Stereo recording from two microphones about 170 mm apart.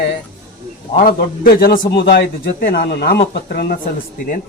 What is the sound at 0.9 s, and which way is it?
Speech, 60° left (ahead or behind).